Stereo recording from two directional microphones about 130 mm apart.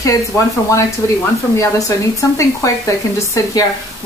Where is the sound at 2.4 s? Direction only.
25° left (ahead or behind).